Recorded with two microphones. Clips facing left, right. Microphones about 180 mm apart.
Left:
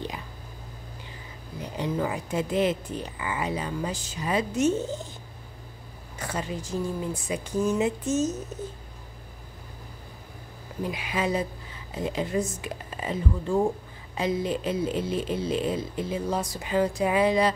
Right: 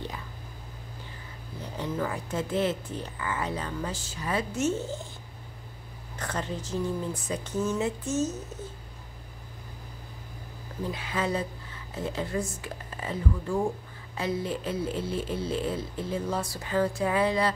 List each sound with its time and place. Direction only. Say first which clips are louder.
1.6 s speech: left 3 dB; 15° left (ahead or behind)
6.1 s speech: left 1 dB; 10° left (ahead or behind)
10.8 s speech: left 2 dB; 15° left (ahead or behind)